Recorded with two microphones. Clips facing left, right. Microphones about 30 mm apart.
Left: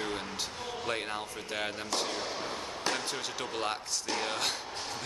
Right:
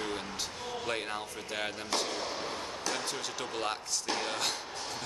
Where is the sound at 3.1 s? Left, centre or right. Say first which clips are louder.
Left 1 dB; centre.